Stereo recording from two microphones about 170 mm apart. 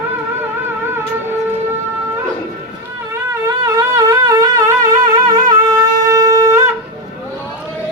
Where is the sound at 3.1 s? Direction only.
15° right (ahead or behind).